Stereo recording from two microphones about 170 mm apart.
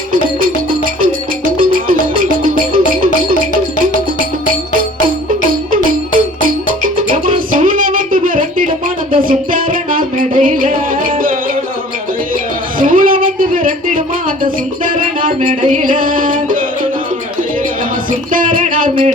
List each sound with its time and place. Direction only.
0.1 s music: 55° right (ahead or behind)
4.7 s music: 55° right (ahead or behind)
12.8 s music: 55° right (ahead or behind)
18.3 s music: 55° right (ahead or behind)